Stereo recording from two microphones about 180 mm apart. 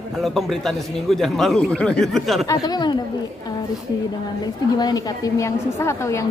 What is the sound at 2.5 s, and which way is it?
Speech, 20° left (ahead or behind).